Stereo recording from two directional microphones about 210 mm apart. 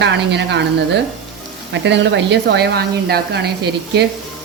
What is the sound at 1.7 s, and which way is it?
A woman's voice, 60° right (ahead or behind).